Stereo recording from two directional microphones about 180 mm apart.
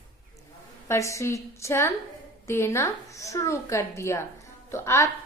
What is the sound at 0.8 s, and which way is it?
A woman's voice, 15° left (ahead or behind).